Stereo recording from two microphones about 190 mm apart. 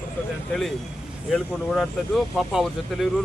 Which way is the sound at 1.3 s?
Centre (ahead or behind).